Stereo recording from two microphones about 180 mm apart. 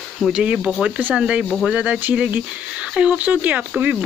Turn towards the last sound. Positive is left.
turn(degrees=-10)  # may be behind; listen again after turning